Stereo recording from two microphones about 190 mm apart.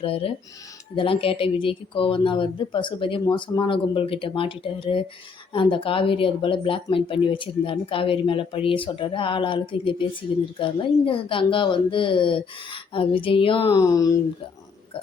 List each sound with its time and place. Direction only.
0.0 s speech: 30° left (ahead or behind)
13.7 s speech: 15° left (ahead or behind)